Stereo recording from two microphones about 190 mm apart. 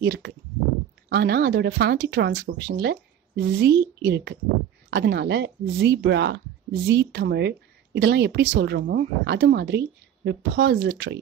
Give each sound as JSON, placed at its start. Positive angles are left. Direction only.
{"t": 0.0, "sound": "speech", "side_deg": -65}